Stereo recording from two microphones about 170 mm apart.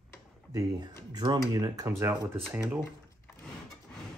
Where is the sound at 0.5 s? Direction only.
20° right (ahead or behind).